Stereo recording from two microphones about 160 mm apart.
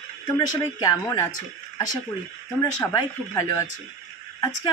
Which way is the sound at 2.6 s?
20° left (ahead or behind).